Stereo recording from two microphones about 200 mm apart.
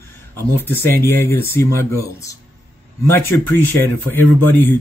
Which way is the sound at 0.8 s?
10° left (ahead or behind).